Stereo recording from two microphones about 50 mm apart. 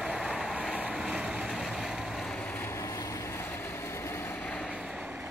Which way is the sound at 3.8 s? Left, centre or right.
Left.